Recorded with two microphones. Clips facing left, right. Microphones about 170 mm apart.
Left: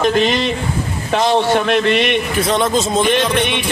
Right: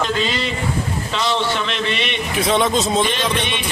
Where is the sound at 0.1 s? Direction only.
65° left (ahead or behind).